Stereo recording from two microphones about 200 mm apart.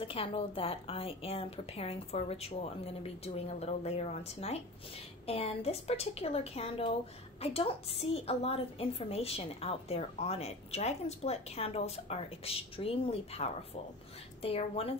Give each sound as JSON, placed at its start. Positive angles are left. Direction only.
{"t": 0.0, "sound": "a woman's voice", "side_deg": 25}